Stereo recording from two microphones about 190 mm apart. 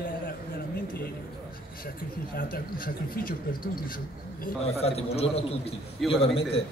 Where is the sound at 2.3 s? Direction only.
50° left (ahead or behind).